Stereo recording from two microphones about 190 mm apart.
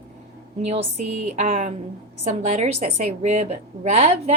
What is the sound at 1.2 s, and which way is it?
A woman's voice, 40° right (ahead or behind).